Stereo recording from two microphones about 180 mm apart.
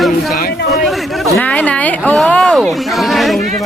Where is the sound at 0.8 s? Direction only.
Centre (ahead or behind).